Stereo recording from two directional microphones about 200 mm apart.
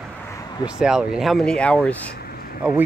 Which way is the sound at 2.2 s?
50° left (ahead or behind).